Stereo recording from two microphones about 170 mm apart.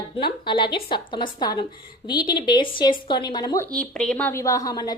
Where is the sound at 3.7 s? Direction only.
5° left (ahead or behind); by 4.9 s 20° left (ahead or behind).